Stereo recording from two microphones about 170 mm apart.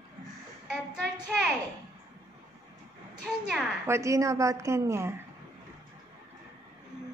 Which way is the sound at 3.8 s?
15° right (ahead or behind).